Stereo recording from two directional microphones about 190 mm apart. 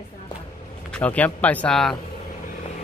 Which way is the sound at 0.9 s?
5° left (ahead or behind).